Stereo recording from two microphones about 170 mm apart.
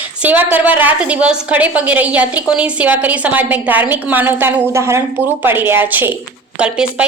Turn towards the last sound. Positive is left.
turn(degrees=-5)  # may be behind; listen again after turning